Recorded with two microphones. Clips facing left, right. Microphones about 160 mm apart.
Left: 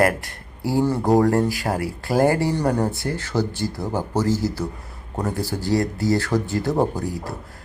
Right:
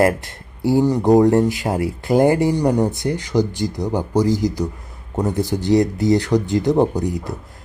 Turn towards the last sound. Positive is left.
turn(degrees=-20)  # may be behind; listen again after turning